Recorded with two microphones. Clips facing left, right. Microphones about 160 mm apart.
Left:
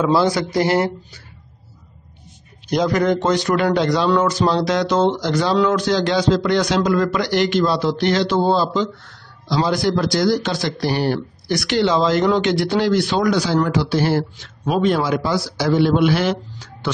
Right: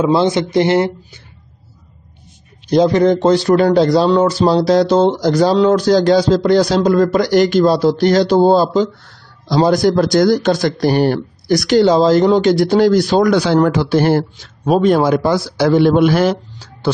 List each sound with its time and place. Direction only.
0.0 s speech: 25° right (ahead or behind)
2.7 s a man's voice: 30° right (ahead or behind)
13.3 s speech: 60° right (ahead or behind)
14.4 s a man's voice: 40° right (ahead or behind)